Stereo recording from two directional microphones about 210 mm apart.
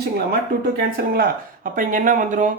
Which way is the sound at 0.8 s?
45° right (ahead or behind).